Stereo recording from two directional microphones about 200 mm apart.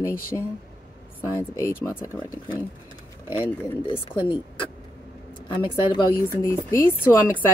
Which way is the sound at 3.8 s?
25° left (ahead or behind).